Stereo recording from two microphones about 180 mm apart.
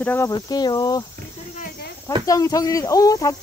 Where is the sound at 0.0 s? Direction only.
10° left (ahead or behind).